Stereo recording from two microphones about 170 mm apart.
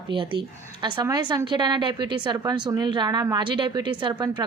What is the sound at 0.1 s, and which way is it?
Speech, 30° right (ahead or behind).